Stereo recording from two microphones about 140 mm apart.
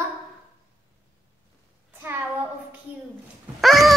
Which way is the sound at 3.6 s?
Centre (ahead or behind).